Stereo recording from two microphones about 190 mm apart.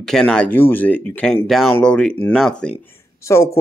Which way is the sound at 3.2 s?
15° left (ahead or behind).